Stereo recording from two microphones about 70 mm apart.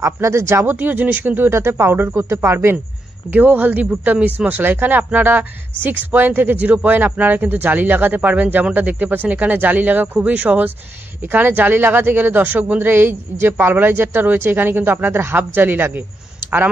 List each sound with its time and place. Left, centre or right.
0.0 s speech: right
0.7 s speech: right
3.3 s speech: right